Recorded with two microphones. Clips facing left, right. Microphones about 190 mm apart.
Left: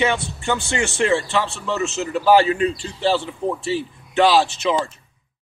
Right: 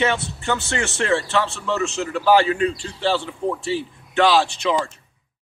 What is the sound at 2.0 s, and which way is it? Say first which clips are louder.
A man's voice: left 2 dB; 20° left (ahead or behind).